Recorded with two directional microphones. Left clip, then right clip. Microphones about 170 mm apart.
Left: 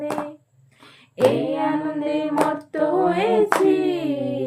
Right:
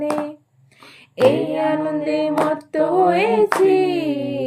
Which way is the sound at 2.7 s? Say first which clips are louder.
Right 4 dB; 35° right (ahead or behind).